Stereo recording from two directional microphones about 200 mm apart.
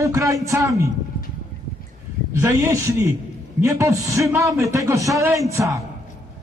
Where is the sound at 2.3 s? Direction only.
15° right (ahead or behind).